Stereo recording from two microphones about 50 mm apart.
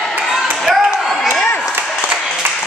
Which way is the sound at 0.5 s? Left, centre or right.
Centre.